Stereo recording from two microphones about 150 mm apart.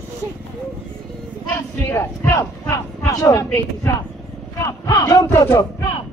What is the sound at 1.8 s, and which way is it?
Speech, 15° left (ahead or behind).